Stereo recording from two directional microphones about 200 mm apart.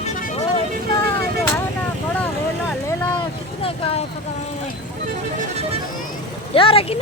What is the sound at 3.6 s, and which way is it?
Vehicle, 30° left (ahead or behind).